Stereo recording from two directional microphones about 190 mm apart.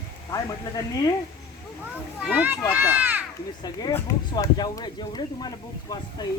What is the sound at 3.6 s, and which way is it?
Speech, 20° left (ahead or behind).